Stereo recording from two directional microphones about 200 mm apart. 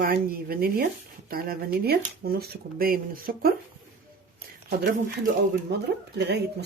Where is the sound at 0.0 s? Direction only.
50° right (ahead or behind).